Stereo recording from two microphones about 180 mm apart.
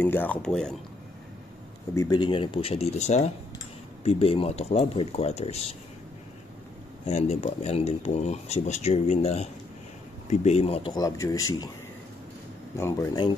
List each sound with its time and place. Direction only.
0.0 s speech: 10° left (ahead or behind)
2.0 s speech: 20° left (ahead or behind); by 5.7 s 35° left (ahead or behind)
7.1 s speech: 40° left (ahead or behind)
11.0 s speech: 15° left (ahead or behind)
12.7 s speech: 15° left (ahead or behind)